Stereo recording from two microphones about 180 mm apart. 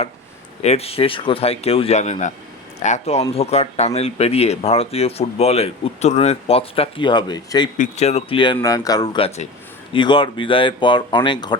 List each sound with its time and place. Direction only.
0.6 s speech: 35° left (ahead or behind)
7.8 s speech: 40° left (ahead or behind)
8.5 s speech: 20° left (ahead or behind)